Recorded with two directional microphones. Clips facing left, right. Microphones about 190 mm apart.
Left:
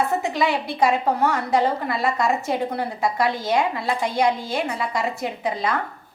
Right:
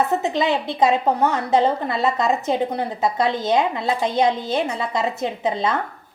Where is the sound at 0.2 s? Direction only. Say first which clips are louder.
Right 2 dB; 20° right (ahead or behind).